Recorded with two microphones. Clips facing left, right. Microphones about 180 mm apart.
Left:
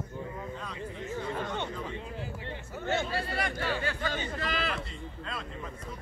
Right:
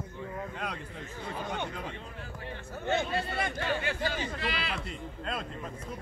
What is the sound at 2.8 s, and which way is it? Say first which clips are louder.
Speech: right 1 dB; 20° right (ahead or behind).